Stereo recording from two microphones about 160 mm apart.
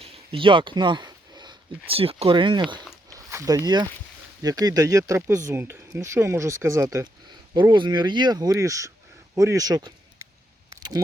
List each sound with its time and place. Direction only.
0.0 s speech: 35° right (ahead or behind)